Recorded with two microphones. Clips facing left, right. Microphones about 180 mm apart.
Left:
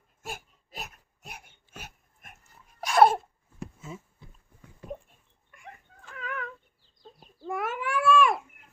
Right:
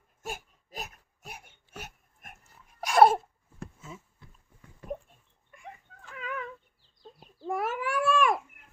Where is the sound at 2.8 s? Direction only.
10° right (ahead or behind).